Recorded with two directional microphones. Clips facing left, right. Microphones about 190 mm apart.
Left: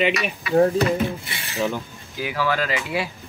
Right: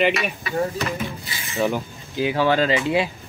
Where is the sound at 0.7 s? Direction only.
30° left (ahead or behind).